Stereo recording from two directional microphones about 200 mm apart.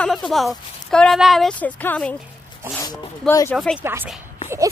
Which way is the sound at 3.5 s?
5° right (ahead or behind).